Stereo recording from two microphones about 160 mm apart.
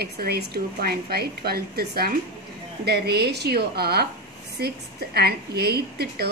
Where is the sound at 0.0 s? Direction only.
80° right.